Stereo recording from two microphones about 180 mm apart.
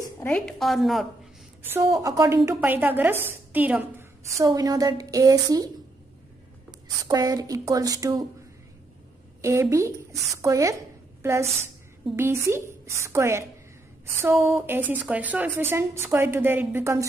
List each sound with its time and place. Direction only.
0.2 s a woman's voice: 5° left (ahead or behind)
1.6 s a woman's voice: 15° right (ahead or behind)
4.4 s a woman's voice: 20° right (ahead or behind)
7.1 s a woman's voice: 20° right (ahead or behind)
9.4 s a woman's voice: 15° right (ahead or behind)
12.2 s a woman's voice: 15° right (ahead or behind)